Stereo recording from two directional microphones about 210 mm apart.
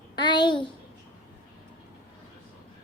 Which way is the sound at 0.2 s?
20° left (ahead or behind).